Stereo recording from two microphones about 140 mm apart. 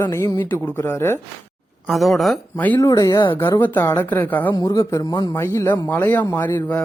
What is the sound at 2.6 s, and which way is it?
Speech, 10° left (ahead or behind).